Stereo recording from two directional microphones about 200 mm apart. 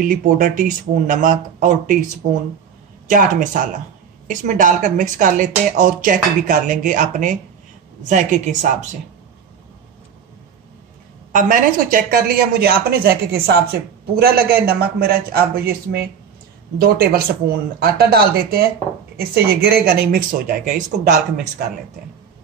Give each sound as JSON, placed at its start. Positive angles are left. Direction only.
{"t": 0.0, "sound": "speech", "side_deg": -45}
{"t": 3.1, "sound": "speech", "side_deg": -40}
{"t": 11.3, "sound": "a woman's voice", "side_deg": -40}
{"t": 16.7, "sound": "a woman's voice", "side_deg": -50}